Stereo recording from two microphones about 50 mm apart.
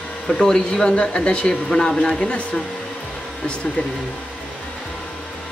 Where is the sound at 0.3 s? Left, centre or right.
Centre.